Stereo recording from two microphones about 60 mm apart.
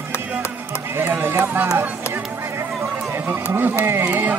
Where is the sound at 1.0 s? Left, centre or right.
Right.